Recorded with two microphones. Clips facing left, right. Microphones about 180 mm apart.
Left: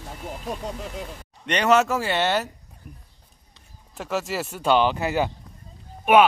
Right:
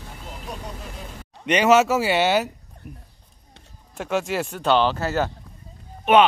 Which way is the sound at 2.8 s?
65° right (ahead or behind).